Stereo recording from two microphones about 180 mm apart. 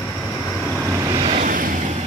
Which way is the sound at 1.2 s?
35° right (ahead or behind).